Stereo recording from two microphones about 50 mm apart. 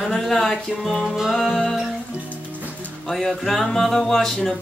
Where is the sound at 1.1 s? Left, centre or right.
Centre.